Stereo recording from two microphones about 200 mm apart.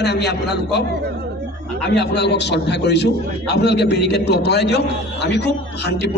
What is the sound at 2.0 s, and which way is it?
A man's voice, 60° left (ahead or behind).